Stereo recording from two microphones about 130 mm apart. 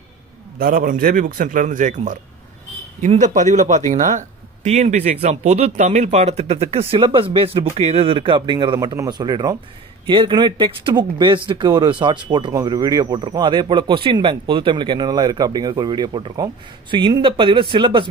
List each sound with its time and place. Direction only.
0.7 s a man's voice: 90° right; by 4.2 s 70° right (ahead or behind)
4.6 s a man's voice: 60° right (ahead or behind); by 18.0 s 40° right (ahead or behind)